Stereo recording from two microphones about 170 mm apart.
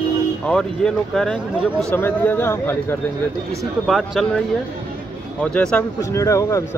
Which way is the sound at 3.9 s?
Centre (ahead or behind).